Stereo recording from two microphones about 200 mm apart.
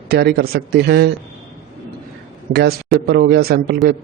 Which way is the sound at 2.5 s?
55° right (ahead or behind).